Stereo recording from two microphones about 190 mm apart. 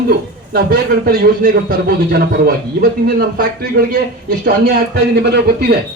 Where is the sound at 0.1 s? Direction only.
55° right (ahead or behind).